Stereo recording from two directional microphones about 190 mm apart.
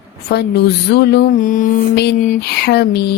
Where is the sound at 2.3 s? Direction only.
60° left (ahead or behind).